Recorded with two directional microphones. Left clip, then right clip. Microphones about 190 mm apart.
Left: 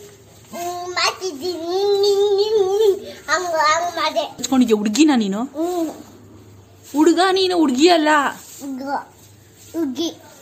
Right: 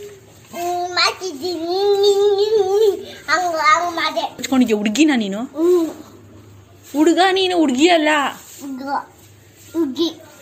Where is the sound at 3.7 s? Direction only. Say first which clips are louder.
Right 3 dB; centre (ahead or behind).